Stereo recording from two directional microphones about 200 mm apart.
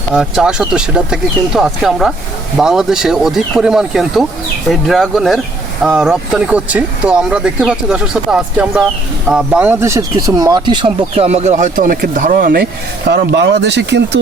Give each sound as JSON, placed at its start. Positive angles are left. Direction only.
{"t": 0.1, "sound": "speech", "side_deg": -5}
{"t": 13.1, "sound": "speech", "side_deg": -55}